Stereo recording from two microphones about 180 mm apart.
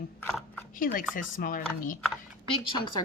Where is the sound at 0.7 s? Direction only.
50° left (ahead or behind).